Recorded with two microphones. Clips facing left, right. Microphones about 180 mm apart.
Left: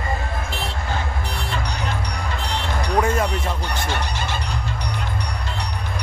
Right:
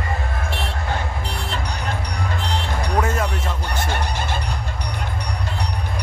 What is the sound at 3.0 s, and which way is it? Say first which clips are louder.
Music: left 2 dB; centre (ahead or behind).